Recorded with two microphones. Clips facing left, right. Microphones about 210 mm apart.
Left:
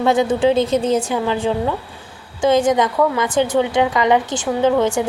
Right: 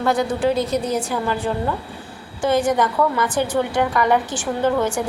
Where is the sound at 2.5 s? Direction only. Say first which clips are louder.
Left 3 dB; 90° left.